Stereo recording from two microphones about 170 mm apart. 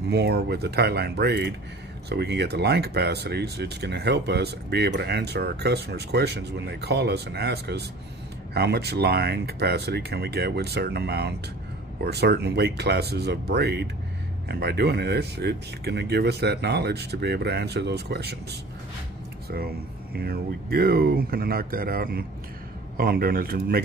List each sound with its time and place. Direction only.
0.1 s speech: 75° right (ahead or behind)
20.2 s speech: 65° right (ahead or behind)